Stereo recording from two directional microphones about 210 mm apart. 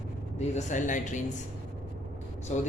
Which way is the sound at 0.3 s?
35° left (ahead or behind).